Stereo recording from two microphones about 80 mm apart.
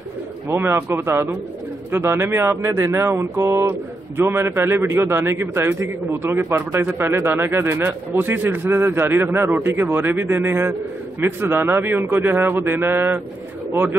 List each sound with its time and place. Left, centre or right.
0.5 s a man's voice: right